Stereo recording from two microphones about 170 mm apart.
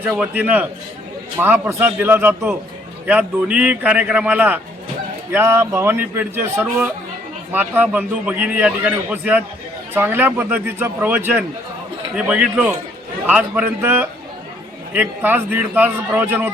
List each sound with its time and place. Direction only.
0.0 s a man's voice: 10° right (ahead or behind)